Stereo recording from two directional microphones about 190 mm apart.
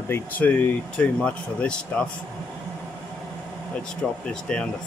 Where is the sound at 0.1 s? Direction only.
10° left (ahead or behind).